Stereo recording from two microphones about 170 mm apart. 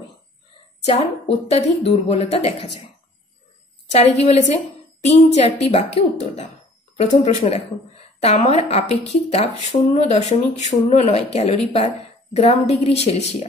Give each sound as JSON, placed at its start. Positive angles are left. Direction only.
{"t": 0.8, "sound": "speech", "side_deg": 35}
{"t": 3.9, "sound": "a woman's voice", "side_deg": 40}